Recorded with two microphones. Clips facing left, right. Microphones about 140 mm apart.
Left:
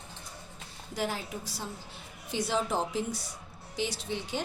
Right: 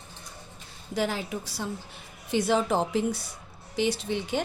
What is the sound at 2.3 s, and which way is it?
A woman's voice, 60° right (ahead or behind).